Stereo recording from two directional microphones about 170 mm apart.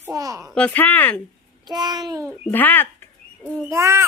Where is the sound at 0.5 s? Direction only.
10° left (ahead or behind).